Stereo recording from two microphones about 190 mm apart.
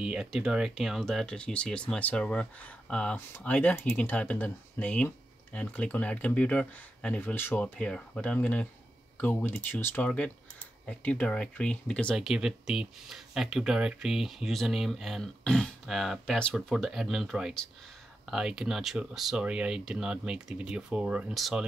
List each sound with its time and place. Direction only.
0.0 s speech: 5° right (ahead or behind)